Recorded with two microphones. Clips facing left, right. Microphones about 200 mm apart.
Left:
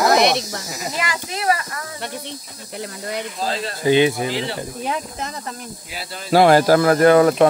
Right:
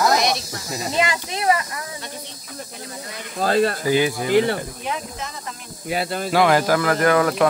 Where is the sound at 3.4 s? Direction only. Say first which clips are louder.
Right 10 dB; 55° right (ahead or behind).